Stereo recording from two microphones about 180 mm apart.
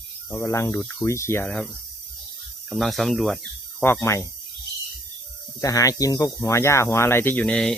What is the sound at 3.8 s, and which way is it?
Speech, 15° left (ahead or behind).